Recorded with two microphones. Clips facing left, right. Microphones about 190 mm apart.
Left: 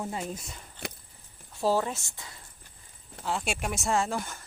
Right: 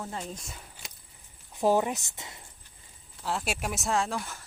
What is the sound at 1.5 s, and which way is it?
Speech, 15° right (ahead or behind).